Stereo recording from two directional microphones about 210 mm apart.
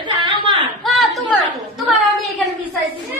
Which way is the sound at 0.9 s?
Centre (ahead or behind).